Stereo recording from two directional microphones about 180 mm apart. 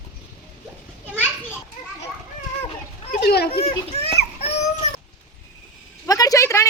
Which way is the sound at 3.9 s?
35° left (ahead or behind).